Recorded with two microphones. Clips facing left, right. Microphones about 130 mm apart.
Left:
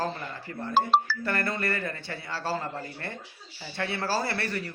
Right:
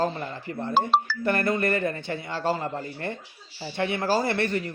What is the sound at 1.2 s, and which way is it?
A man's voice, 20° right (ahead or behind).